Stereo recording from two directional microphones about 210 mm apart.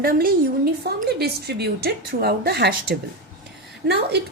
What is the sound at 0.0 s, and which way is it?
A woman's voice, 45° right (ahead or behind).